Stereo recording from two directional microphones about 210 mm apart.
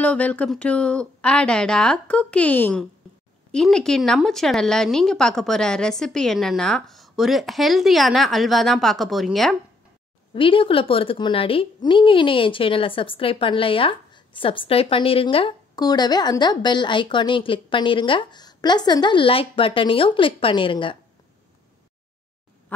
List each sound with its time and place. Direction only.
0.0 s speech: 5° left (ahead or behind)
10.3 s a woman's voice: 25° left (ahead or behind)
22.7 s a sound: 5° left (ahead or behind)